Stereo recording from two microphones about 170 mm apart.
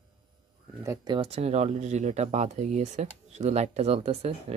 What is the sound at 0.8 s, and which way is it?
Speech, 25° right (ahead or behind).